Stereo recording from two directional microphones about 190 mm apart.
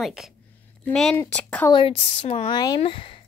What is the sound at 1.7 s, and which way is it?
Speech, 30° left (ahead or behind).